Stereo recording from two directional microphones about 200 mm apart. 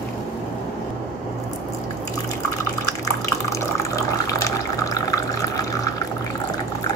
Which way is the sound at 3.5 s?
15° left (ahead or behind).